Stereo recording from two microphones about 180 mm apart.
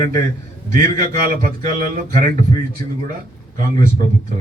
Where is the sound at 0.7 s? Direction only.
50° right (ahead or behind).